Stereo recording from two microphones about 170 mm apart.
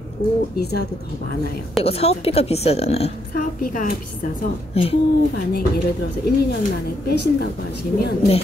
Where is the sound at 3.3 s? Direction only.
55° left (ahead or behind).